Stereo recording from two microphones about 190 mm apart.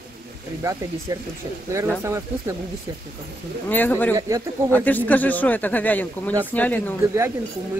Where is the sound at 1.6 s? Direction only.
15° right (ahead or behind).